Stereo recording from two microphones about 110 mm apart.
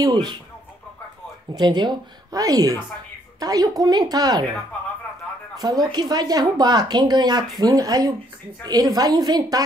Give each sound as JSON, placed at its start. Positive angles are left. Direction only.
{"t": 0.0, "sound": "speech", "side_deg": -40}
{"t": 1.5, "sound": "speech", "side_deg": -40}
{"t": 5.6, "sound": "speech", "side_deg": -40}